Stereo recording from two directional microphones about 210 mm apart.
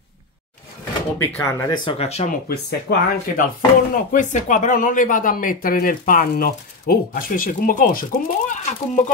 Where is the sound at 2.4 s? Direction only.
50° left (ahead or behind).